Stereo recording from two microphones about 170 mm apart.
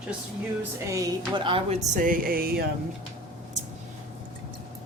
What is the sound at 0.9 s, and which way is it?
Speech, 25° right (ahead or behind).